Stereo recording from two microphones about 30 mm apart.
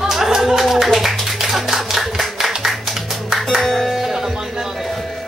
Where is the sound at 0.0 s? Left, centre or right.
Centre.